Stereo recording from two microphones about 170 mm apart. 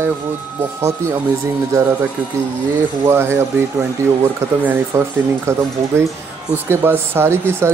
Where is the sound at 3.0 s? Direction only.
15° right (ahead or behind).